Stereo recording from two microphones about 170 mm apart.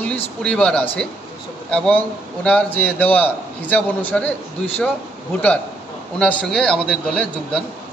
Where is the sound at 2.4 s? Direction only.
10° left (ahead or behind).